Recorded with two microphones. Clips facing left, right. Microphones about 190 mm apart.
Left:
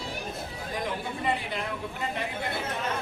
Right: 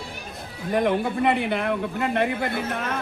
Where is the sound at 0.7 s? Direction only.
65° right (ahead or behind).